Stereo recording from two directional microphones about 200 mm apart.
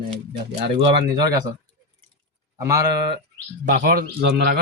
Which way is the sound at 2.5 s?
15° right (ahead or behind).